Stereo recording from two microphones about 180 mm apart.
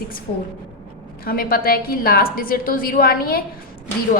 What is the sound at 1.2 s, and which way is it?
A woman's voice, 55° left (ahead or behind).